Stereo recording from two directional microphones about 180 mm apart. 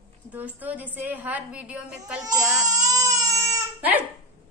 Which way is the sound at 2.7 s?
20° right (ahead or behind).